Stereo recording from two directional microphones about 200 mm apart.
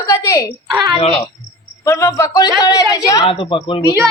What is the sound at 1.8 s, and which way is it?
A man's voice, 15° left (ahead or behind).